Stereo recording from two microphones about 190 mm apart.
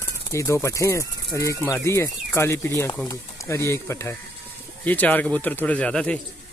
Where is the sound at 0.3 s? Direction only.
15° left (ahead or behind).